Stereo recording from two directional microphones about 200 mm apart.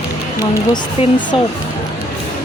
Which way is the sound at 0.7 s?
20° left (ahead or behind).